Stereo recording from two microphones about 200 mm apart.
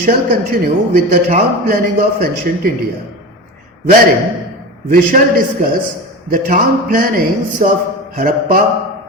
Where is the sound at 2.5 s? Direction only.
45° right (ahead or behind).